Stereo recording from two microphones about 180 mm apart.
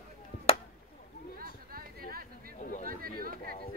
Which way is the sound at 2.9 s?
55° right (ahead or behind).